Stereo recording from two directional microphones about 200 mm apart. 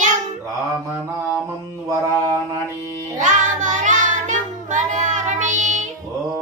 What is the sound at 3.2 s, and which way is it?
Child singing, 35° right (ahead or behind).